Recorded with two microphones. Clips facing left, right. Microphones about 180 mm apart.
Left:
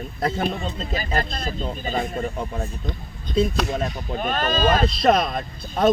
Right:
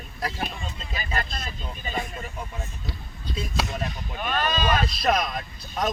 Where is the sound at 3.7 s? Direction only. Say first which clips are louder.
Left 6 dB; 40° left (ahead or behind).